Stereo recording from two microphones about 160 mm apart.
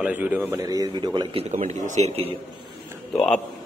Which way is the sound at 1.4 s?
45° right (ahead or behind).